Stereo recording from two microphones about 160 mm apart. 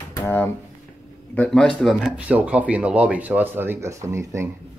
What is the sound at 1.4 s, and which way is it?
Speech, 5° left (ahead or behind).